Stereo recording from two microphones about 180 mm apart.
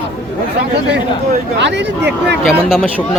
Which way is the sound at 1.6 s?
75° right (ahead or behind).